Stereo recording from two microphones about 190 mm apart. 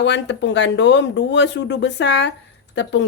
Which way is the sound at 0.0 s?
70° left (ahead or behind).